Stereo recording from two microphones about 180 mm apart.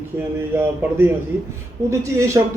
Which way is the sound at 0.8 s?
10° right (ahead or behind).